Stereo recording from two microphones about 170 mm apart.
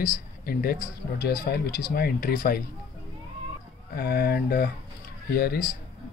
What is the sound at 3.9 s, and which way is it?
Speech, 65° left (ahead or behind).